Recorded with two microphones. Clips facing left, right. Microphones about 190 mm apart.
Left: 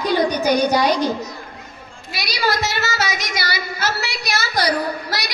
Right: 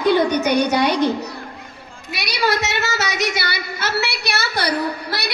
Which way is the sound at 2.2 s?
65° right (ahead or behind).